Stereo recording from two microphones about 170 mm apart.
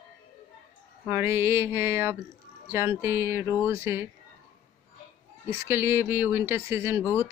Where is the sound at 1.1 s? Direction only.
15° right (ahead or behind).